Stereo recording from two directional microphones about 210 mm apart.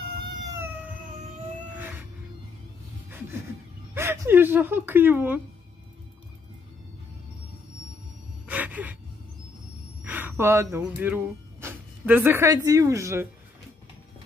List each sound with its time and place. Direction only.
0.2 s cat: 20° right (ahead or behind)
1.8 s music: 10° right (ahead or behind)
3.9 s speech: 10° right (ahead or behind)
8.5 s gasp: 10° right (ahead or behind)
10.0 s speech: 10° right (ahead or behind)